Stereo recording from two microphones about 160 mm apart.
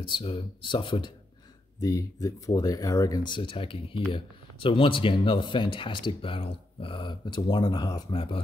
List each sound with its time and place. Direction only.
0.1 s speech: 35° left (ahead or behind)
1.8 s speech: 20° left (ahead or behind)